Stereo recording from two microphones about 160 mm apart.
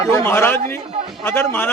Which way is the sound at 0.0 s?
15° left (ahead or behind).